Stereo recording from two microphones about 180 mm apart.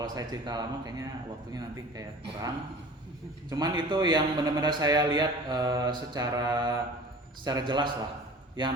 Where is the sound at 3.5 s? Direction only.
25° right (ahead or behind).